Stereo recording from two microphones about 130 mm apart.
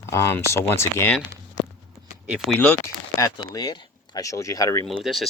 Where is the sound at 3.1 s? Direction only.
25° left (ahead or behind).